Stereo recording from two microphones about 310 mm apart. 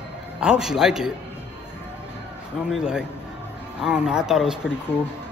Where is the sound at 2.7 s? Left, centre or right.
Centre.